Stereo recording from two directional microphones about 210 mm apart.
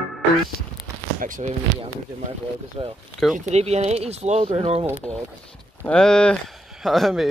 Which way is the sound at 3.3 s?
30° right (ahead or behind).